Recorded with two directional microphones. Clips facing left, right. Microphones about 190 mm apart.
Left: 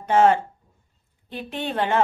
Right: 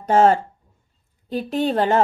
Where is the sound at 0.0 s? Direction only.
40° right (ahead or behind).